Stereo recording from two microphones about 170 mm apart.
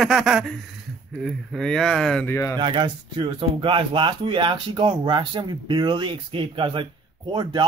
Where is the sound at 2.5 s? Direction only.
30° right (ahead or behind).